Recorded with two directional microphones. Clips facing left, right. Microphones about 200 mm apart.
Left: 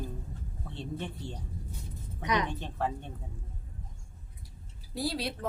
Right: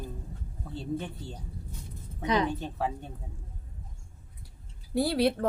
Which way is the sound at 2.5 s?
5° right (ahead or behind).